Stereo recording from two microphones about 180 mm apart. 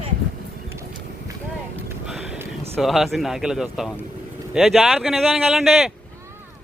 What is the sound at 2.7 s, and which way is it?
Speech, centre (ahead or behind).